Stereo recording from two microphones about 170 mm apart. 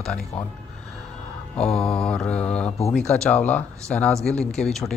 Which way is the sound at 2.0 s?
5° left (ahead or behind).